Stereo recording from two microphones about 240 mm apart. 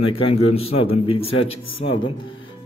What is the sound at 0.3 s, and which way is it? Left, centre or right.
A man's voice, left.